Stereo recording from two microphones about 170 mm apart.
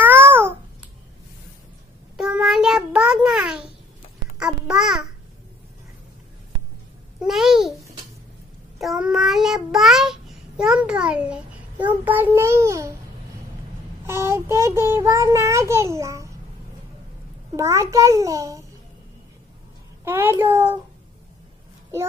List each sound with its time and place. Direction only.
0.0 s babbling: 10° right (ahead or behind)
2.1 s child singing: 5° right (ahead or behind)
4.4 s babbling: 5° right (ahead or behind)
7.2 s babbling: 5° right (ahead or behind)
8.7 s child singing: 5° right (ahead or behind)
14.0 s child singing: 15° right (ahead or behind)
17.5 s a sound: 20° right (ahead or behind)
20.1 s a sound: 15° right (ahead or behind)